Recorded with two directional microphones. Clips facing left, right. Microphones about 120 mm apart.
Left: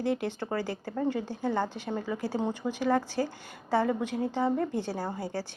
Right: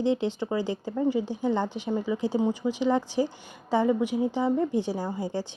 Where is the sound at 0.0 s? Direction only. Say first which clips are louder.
Right 4 dB; 20° right (ahead or behind).